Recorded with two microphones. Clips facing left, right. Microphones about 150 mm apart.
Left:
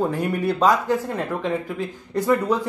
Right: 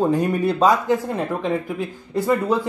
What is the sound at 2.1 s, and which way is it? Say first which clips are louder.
Speech: even; 10° right (ahead or behind).